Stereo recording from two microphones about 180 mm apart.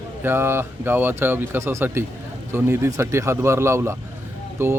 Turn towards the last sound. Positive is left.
turn(degrees=-15)  # may be behind; listen again after turning